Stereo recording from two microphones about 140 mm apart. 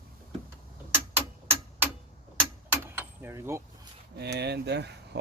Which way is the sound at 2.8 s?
15° right (ahead or behind).